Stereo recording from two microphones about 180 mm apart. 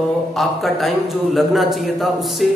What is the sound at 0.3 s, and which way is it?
A man's voice, centre (ahead or behind).